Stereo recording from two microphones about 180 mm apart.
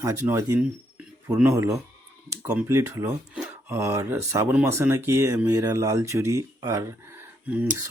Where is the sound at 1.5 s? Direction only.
15° right (ahead or behind).